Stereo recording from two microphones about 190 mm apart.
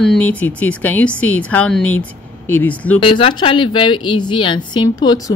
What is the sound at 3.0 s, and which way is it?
A woman's voice, 25° left (ahead or behind).